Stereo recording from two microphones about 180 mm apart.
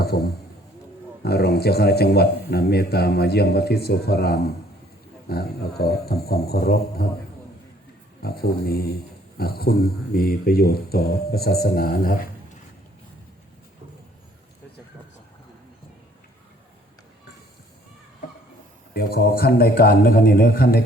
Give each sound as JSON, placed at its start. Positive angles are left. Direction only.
{"t": 0.1, "sound": "a man's voice", "side_deg": 60}
{"t": 8.2, "sound": "a man's voice", "side_deg": 60}
{"t": 18.9, "sound": "a man's voice", "side_deg": 60}